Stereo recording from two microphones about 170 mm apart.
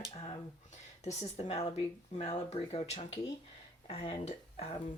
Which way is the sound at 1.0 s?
40° left (ahead or behind).